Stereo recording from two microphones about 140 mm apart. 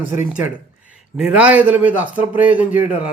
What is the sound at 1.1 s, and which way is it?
A man's voice, 5° right (ahead or behind).